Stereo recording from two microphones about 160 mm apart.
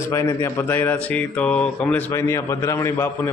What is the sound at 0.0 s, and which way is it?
Speech, 20° left (ahead or behind).